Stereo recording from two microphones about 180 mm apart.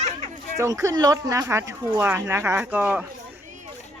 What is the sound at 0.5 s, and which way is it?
Speech, 15° right (ahead or behind).